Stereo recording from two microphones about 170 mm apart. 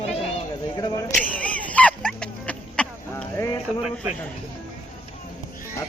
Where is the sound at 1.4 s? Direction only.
10° left (ahead or behind).